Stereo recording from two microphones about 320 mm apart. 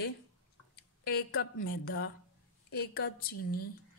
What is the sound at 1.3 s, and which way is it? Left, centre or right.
A woman's voice, left.